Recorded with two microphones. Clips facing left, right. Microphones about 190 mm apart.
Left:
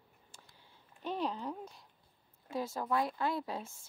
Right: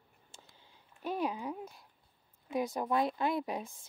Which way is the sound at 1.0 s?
10° right (ahead or behind).